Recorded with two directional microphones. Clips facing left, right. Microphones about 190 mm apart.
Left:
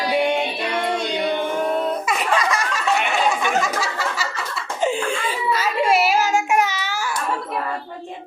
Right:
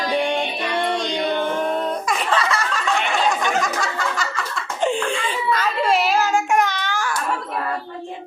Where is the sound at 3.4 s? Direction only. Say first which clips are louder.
Even; 5° left (ahead or behind).